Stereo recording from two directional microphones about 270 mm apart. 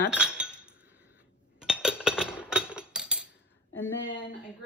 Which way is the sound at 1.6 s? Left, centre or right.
Centre.